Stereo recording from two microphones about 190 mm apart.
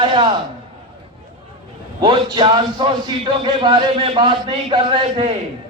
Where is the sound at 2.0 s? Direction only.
25° right (ahead or behind).